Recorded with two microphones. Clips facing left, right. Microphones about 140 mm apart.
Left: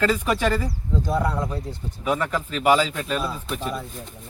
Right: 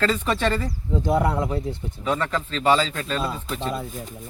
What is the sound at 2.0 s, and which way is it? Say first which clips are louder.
Speech: left 1 dB; 10° left (ahead or behind).